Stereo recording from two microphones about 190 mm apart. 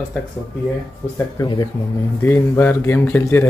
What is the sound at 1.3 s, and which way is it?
A woman's voice, 20° left (ahead or behind).